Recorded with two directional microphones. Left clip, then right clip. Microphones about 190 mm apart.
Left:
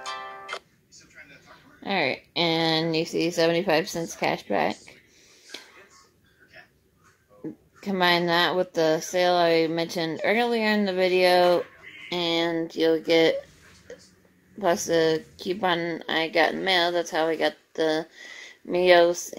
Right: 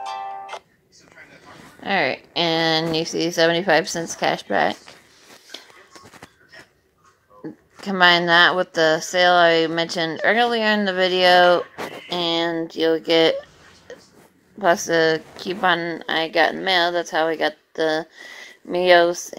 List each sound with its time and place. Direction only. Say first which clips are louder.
0.0 s music: right 6 dB; 30° left (ahead or behind)
1.8 s speech: right 5 dB; 15° right (ahead or behind)
7.8 s speech: right 7 dB; 10° right (ahead or behind)
13.9 s a sound: right 4 dB; 15° right (ahead or behind)
14.6 s speech: right 5 dB; 20° right (ahead or behind)